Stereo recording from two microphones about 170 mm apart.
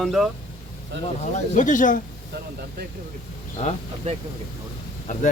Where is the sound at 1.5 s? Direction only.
50° left (ahead or behind).